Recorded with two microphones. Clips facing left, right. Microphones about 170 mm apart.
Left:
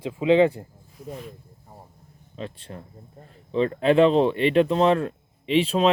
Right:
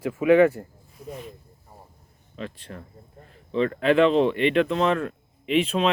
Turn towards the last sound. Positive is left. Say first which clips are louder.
# left 2 dB
turn(degrees=35)  # may be behind; listen again after turning